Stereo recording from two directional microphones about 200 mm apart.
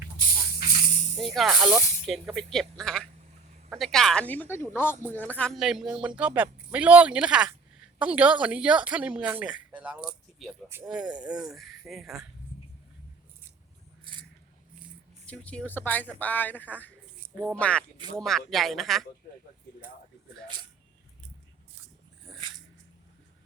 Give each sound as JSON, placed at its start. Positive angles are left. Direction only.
{"t": 1.2, "sound": "a woman's voice", "side_deg": 0}
{"t": 14.0, "sound": "a sound", "side_deg": -25}
{"t": 15.3, "sound": "speech", "side_deg": 5}